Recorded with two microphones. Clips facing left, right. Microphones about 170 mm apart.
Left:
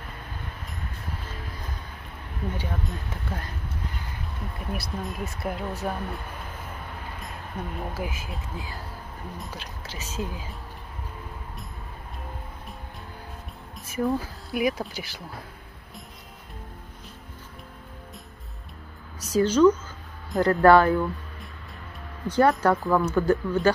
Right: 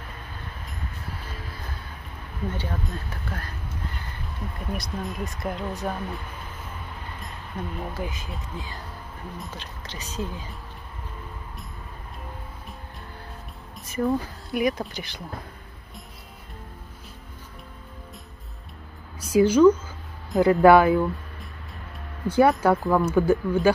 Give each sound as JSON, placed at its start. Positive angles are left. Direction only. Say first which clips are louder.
{"t": 2.5, "sound": "speech", "louder": "right 1 dB", "side_deg": 15}
{"t": 4.6, "sound": "speech", "louder": "right 1 dB", "side_deg": 5}
{"t": 7.9, "sound": "speech", "louder": "even", "side_deg": 5}
{"t": 13.8, "sound": "speech", "louder": "right 1 dB", "side_deg": 5}
{"t": 19.1, "sound": "speech", "louder": "right 3 dB", "side_deg": -10}